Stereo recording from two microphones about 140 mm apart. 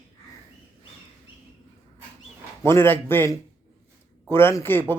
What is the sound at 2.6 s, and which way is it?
Speech, 15° left (ahead or behind).